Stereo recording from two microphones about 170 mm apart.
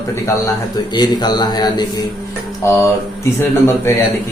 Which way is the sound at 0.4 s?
25° left (ahead or behind).